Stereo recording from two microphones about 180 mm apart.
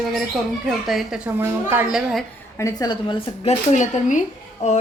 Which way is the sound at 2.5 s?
20° left (ahead or behind).